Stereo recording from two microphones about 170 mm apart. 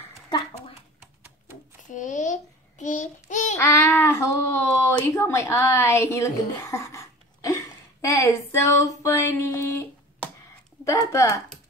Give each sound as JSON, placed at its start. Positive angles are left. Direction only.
{"t": 1.9, "sound": "child singing", "side_deg": 50}
{"t": 3.5, "sound": "a sound", "side_deg": 15}
{"t": 5.2, "sound": "speech", "side_deg": 15}